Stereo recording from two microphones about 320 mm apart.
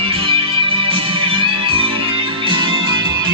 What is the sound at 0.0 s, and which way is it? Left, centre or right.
Music, centre.